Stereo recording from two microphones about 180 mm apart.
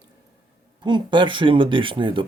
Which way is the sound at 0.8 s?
25° right (ahead or behind).